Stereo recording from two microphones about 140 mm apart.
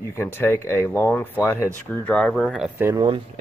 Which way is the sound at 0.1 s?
15° left (ahead or behind).